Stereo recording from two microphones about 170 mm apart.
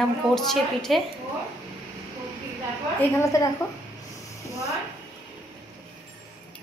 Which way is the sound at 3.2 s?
20° left (ahead or behind).